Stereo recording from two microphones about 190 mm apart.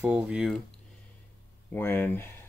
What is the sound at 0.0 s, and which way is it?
Speech, 5° right (ahead or behind).